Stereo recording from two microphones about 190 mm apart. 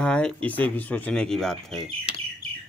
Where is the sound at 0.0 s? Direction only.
5° left (ahead or behind).